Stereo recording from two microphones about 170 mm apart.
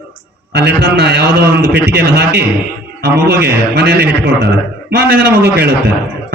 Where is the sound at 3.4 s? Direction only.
75° right (ahead or behind).